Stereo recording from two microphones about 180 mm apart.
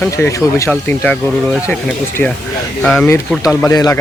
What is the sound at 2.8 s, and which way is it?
Speech, 5° left (ahead or behind).